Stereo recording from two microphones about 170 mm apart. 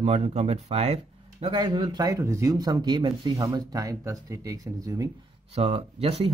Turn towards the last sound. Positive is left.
turn(degrees=-35)  # may be behind; listen again after turning